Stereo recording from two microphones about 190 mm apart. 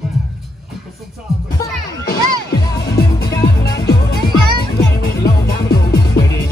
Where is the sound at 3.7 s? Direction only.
20° left (ahead or behind).